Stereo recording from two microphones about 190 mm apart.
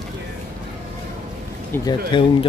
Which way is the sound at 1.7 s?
20° left (ahead or behind).